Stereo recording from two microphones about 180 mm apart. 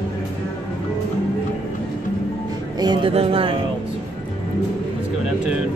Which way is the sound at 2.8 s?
25° right (ahead or behind).